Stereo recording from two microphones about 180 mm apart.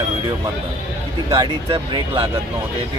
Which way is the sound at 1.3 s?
20° right (ahead or behind).